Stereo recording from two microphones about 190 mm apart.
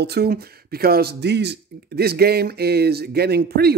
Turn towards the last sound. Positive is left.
turn(degrees=-55)  # may be behind; listen again after turning